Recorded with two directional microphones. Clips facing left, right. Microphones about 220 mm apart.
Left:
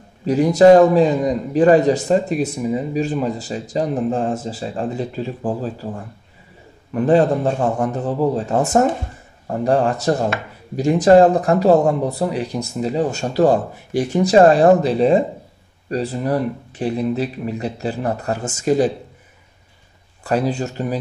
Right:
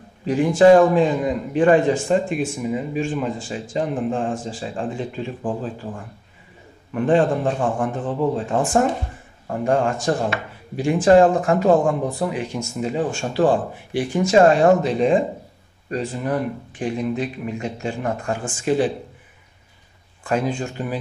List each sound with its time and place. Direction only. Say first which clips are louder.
0.2 s speech: left 3 dB; 40° left (ahead or behind)
6.9 s speech: left 3 dB; 40° left (ahead or behind)
20.2 s speech: left 3 dB; 40° left (ahead or behind)